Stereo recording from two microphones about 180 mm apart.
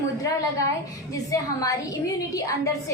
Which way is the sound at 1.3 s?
20° left (ahead or behind).